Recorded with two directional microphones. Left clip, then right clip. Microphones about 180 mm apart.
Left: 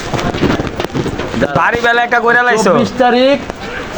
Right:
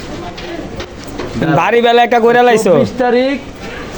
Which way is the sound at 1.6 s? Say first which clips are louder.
Right 4 dB; 60° right (ahead or behind).